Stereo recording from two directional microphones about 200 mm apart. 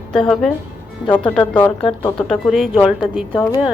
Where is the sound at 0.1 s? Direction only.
5° left (ahead or behind).